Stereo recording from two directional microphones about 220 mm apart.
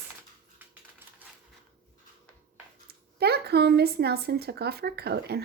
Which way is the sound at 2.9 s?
45° right (ahead or behind).